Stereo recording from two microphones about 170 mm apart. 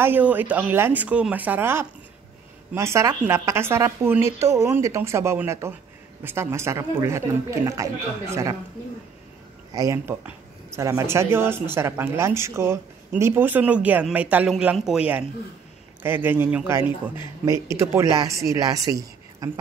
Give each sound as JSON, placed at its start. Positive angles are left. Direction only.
{"t": 0.0, "sound": "speech", "side_deg": -10}
{"t": 9.8, "sound": "speech", "side_deg": -15}